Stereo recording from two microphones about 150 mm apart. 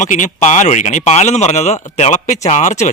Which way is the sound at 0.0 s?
55° left (ahead or behind).